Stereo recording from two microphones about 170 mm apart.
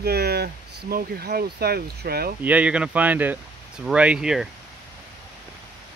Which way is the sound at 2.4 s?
10° right (ahead or behind).